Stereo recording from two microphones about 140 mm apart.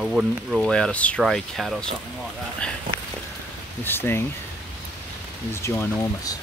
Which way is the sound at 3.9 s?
15° left (ahead or behind).